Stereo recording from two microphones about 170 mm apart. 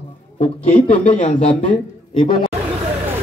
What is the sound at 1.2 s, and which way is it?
Speech, 40° left (ahead or behind).